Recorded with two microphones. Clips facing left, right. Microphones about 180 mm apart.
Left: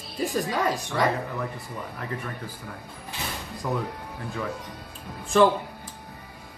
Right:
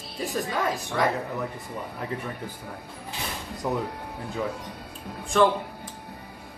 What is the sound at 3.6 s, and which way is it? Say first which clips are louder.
Speech: right 1 dB; 20° right (ahead or behind).